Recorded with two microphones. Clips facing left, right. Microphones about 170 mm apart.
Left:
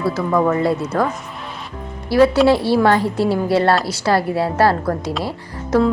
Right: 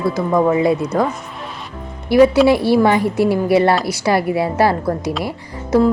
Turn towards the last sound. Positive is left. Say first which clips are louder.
# right 2 dB
turn(degrees=-15)  # may be behind; listen again after turning